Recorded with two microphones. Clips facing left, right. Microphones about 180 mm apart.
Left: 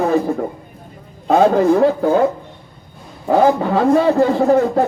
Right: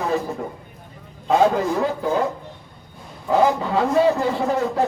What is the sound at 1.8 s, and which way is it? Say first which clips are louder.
Speech: left 8 dB; 55° left (ahead or behind).